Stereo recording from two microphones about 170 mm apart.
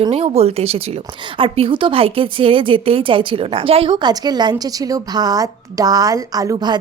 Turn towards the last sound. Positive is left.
turn(degrees=-25)  # may be behind; listen again after turning